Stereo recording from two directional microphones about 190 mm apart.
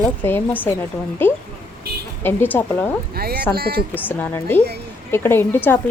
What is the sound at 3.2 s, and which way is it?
Speech, 55° right (ahead or behind).